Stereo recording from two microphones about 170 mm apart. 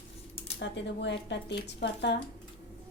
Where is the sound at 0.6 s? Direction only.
90° left.